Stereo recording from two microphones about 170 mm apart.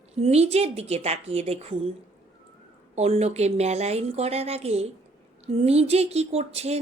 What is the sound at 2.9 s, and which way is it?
A woman's voice, 40° right (ahead or behind).